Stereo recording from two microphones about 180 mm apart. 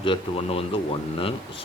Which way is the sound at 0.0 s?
30° left (ahead or behind).